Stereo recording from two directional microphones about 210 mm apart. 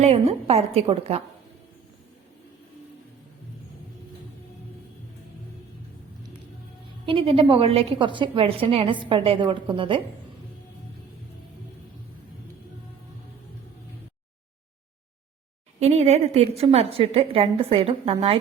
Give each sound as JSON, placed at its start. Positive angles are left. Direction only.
{"t": 0.0, "sound": "a woman's voice", "side_deg": -30}
{"t": 7.0, "sound": "a woman's voice", "side_deg": -25}
{"t": 15.8, "sound": "a woman's voice", "side_deg": -30}